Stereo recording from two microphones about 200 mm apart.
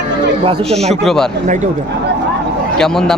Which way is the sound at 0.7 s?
Centre (ahead or behind).